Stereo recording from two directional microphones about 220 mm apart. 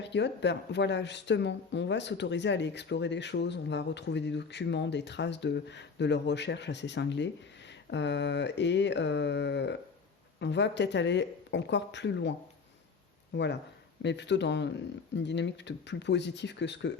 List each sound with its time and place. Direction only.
0.0 s speech: 50° left (ahead or behind)
13.3 s speech: 50° left (ahead or behind)